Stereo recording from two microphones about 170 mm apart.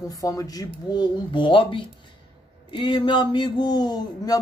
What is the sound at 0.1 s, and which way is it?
Speech, 20° left (ahead or behind).